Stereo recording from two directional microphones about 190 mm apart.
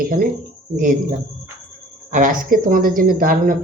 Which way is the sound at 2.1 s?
45° right (ahead or behind).